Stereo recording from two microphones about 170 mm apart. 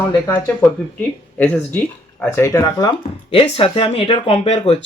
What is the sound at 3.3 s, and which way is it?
Speech, 35° left (ahead or behind).